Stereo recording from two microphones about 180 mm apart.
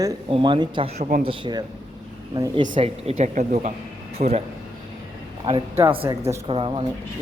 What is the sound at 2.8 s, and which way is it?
Speech, 35° right (ahead or behind).